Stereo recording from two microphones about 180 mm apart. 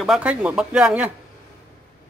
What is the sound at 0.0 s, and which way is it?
A man's voice, 5° right (ahead or behind).